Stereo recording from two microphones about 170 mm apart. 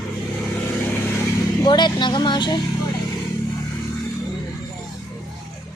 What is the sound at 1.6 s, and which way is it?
Speech, 25° left (ahead or behind).